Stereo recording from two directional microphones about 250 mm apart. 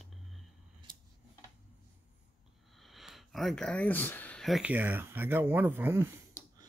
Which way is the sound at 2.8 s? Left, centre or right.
Centre.